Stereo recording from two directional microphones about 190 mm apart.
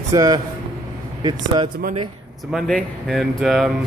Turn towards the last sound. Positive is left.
turn(degrees=0)  # may be behind; listen again after turning